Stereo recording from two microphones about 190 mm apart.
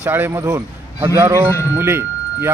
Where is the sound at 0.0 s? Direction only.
10° right (ahead or behind).